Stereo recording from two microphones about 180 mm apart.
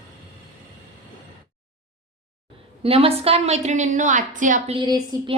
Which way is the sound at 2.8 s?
30° right (ahead or behind).